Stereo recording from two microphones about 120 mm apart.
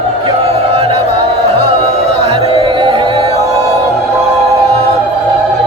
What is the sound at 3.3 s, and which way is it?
Music, 25° right (ahead or behind).